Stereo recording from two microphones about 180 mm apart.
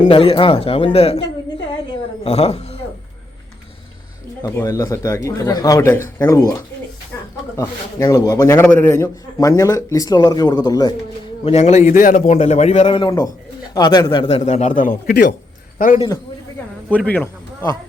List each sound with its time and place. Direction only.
0.1 s a man's voice: 30° left (ahead or behind)
2.2 s a woman's voice: 35° left (ahead or behind)
4.4 s speech: 15° left (ahead or behind)
7.5 s a man's voice: 15° left (ahead or behind)
11.4 s a man's voice: 35° left (ahead or behind)
16.9 s speech: 10° left (ahead or behind)